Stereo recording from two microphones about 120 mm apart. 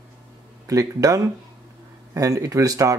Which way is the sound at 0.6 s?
30° right (ahead or behind).